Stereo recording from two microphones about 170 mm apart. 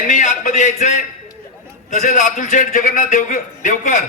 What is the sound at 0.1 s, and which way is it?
A man's voice, 45° left (ahead or behind).